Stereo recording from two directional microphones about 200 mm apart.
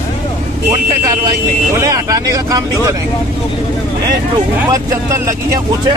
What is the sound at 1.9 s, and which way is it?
Speech, 15° right (ahead or behind).